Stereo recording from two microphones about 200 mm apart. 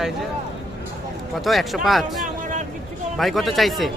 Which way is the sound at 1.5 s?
Centre (ahead or behind).